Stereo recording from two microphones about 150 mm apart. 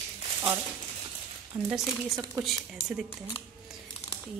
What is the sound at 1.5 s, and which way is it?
Speech, 25° right (ahead or behind).